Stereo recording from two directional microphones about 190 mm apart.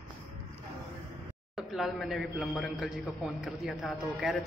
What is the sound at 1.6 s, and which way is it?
A man's voice, centre (ahead or behind).